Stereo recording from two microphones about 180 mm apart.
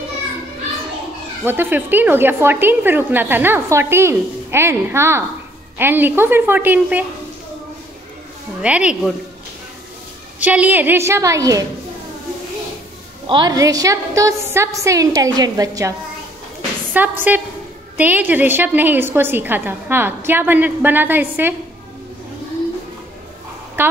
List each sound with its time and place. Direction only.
1.4 s a woman's voice: 10° right (ahead or behind)
8.5 s speech: 5° right (ahead or behind)
10.4 s a woman's voice: 10° right (ahead or behind)
13.3 s a woman's voice: 20° right (ahead or behind)
16.9 s a woman's voice: 10° right (ahead or behind)
23.8 s a woman's voice: 10° right (ahead or behind)